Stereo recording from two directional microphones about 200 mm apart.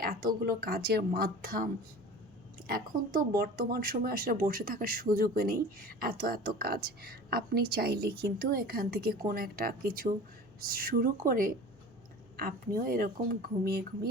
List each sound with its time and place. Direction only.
0.4 s speech: 50° right (ahead or behind)